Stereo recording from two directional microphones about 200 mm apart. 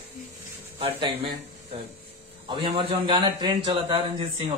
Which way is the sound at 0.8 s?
25° right (ahead or behind).